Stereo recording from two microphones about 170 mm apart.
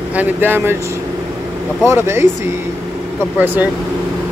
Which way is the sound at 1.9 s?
15° right (ahead or behind).